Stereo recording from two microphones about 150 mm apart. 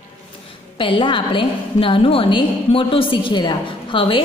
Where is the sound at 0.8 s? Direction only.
35° left (ahead or behind).